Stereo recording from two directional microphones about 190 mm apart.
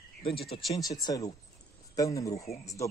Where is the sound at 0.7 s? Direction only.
20° left (ahead or behind).